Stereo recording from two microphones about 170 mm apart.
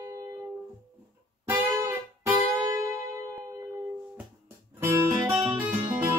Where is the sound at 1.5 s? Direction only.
15° right (ahead or behind).